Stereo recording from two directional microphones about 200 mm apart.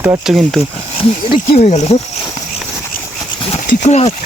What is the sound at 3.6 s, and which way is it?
Speech, 35° left (ahead or behind).